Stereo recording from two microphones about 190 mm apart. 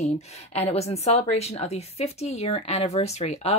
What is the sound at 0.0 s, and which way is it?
Speech, 35° left (ahead or behind).